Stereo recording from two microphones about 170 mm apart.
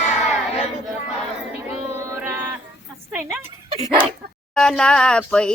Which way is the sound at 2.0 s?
15° right (ahead or behind).